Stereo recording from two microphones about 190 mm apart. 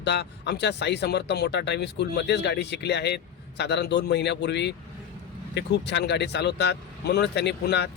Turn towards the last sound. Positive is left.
turn(degrees=60)  # may be behind; listen again after turning